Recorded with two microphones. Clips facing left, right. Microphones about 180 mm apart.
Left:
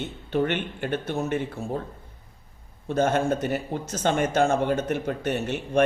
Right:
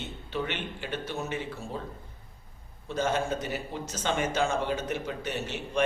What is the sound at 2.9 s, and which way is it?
Speech, 55° left (ahead or behind).